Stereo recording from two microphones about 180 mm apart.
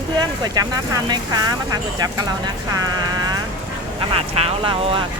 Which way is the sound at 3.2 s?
20° right (ahead or behind).